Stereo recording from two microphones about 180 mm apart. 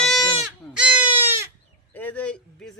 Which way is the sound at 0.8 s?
10° right (ahead or behind).